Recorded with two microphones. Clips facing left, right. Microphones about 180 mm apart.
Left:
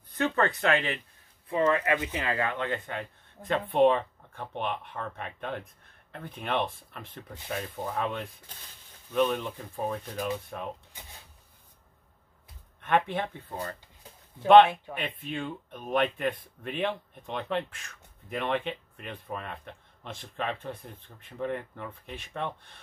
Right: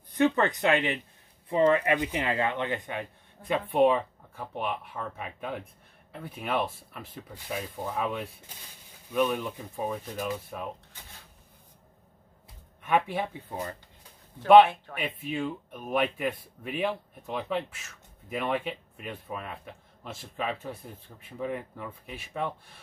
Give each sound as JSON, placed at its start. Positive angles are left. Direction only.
{"t": 0.1, "sound": "speech", "side_deg": -15}
{"t": 12.8, "sound": "speech", "side_deg": -10}
{"t": 15.0, "sound": "speech", "side_deg": -10}